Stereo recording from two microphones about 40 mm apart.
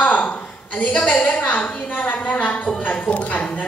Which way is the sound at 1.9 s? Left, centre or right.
Left.